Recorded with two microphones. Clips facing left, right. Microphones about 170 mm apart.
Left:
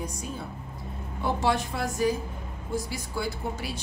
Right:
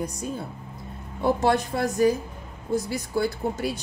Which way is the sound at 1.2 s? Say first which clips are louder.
Right 5 dB; 50° right (ahead or behind).